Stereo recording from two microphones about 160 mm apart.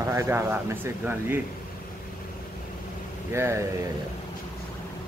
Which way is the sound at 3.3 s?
15° right (ahead or behind).